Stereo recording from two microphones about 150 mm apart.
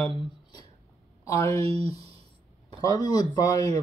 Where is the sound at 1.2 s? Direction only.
20° left (ahead or behind).